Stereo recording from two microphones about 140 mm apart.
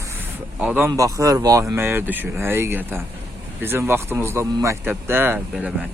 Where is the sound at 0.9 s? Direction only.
25° right (ahead or behind).